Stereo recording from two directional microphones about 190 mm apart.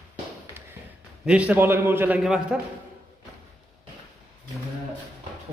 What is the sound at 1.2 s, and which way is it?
A man's voice, 5° right (ahead or behind).